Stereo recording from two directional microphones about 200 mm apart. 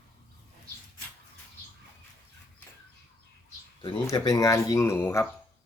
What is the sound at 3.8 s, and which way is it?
Speech, 20° left (ahead or behind).